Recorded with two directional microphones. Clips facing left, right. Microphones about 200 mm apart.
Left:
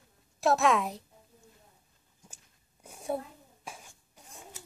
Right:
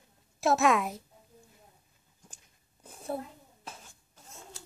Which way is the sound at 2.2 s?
10° left (ahead or behind).